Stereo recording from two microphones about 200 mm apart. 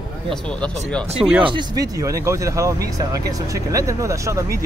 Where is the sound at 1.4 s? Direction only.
20° right (ahead or behind).